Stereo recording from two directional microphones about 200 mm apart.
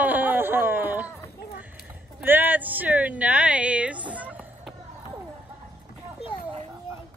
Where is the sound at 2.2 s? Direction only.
10° right (ahead or behind).